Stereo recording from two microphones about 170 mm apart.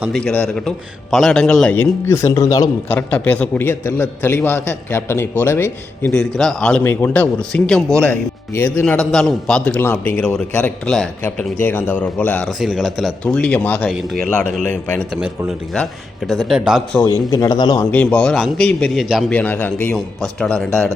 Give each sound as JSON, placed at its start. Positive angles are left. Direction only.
{"t": 0.1, "sound": "a man's voice", "side_deg": 5}
{"t": 3.1, "sound": "a man's voice", "side_deg": 10}
{"t": 17.0, "sound": "speech", "side_deg": 20}
{"t": 17.9, "sound": "a man's voice", "side_deg": 10}
{"t": 19.4, "sound": "a man's voice", "side_deg": 10}